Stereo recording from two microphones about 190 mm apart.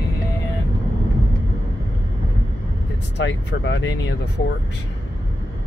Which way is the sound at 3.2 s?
65° left (ahead or behind).